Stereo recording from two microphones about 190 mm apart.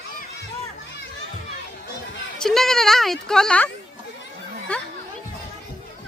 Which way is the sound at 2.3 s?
Centre (ahead or behind).